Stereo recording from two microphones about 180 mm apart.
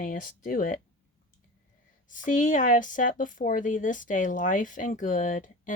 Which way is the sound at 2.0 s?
45° left (ahead or behind).